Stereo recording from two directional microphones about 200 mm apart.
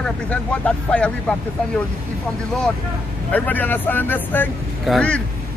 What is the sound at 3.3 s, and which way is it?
Speech, 10° left (ahead or behind).